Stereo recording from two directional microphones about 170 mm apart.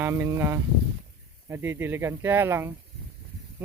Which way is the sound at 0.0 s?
15° right (ahead or behind).